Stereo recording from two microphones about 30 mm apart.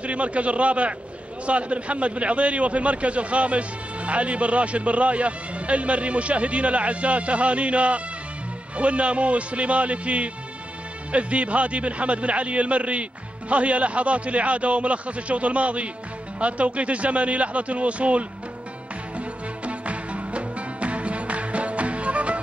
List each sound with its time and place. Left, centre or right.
0.0 s a man's voice: right
19.1 s music: right